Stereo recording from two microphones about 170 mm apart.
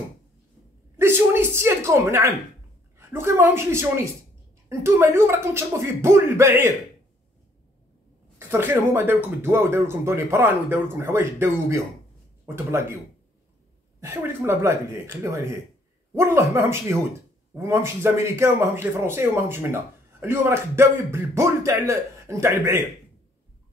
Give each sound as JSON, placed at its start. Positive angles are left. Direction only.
{"t": 0.9, "sound": "a sound", "side_deg": -15}
{"t": 3.0, "sound": "speech", "side_deg": -15}
{"t": 8.4, "sound": "speech", "side_deg": -15}
{"t": 14.0, "sound": "speech", "side_deg": -15}